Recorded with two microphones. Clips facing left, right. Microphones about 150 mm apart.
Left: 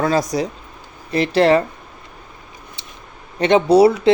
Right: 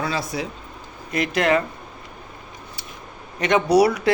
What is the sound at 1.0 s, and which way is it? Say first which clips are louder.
Speech: left 6 dB; 30° left (ahead or behind).